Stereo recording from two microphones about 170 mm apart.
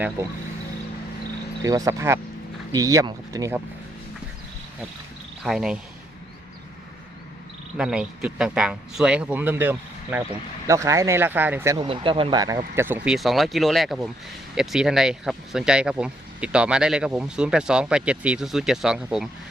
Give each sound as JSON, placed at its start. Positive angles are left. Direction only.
{"t": 1.6, "sound": "speech", "side_deg": -20}
{"t": 5.4, "sound": "speech", "side_deg": -5}
{"t": 7.8, "sound": "speech", "side_deg": -5}
{"t": 11.9, "sound": "speech", "side_deg": -30}
{"t": 12.5, "sound": "speech", "side_deg": -15}
{"t": 13.1, "sound": "speech", "side_deg": 0}